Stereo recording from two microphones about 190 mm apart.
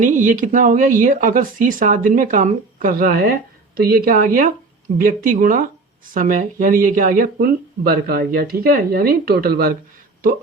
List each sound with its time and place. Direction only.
0.0 s speech: 40° right (ahead or behind)